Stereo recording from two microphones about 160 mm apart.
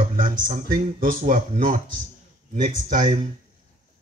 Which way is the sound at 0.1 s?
60° right (ahead or behind).